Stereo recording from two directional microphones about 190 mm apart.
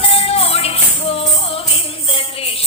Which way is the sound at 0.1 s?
30° left (ahead or behind).